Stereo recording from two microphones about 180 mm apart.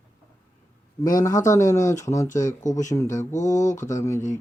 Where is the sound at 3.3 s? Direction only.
45° left (ahead or behind).